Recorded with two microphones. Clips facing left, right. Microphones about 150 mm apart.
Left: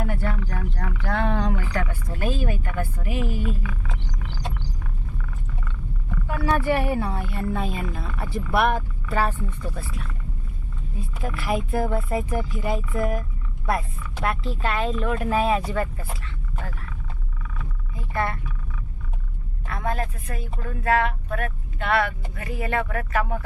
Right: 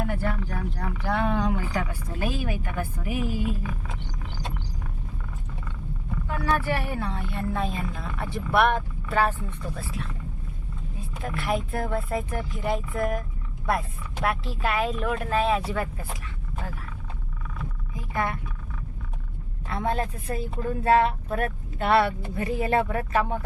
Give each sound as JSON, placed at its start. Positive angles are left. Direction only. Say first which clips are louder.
{"t": 0.0, "sound": "a sound", "louder": "even", "side_deg": 0}
{"t": 1.0, "sound": "speech", "louder": "even", "side_deg": -5}
{"t": 3.6, "sound": "speech", "louder": "even", "side_deg": -40}
{"t": 6.2, "sound": "a woman's voice", "louder": "left 3 dB", "side_deg": 15}
{"t": 11.2, "sound": "a woman's voice", "louder": "left 1 dB", "side_deg": 0}
{"t": 14.3, "sound": "a woman's voice", "louder": "left 1 dB", "side_deg": -5}
{"t": 17.9, "sound": "speech", "louder": "left 2 dB", "side_deg": -15}
{"t": 19.6, "sound": "a woman's voice", "louder": "right 1 dB", "side_deg": -25}